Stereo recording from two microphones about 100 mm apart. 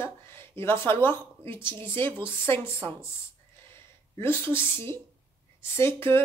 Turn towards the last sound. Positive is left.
turn(degrees=25)  # may be behind; listen again after turning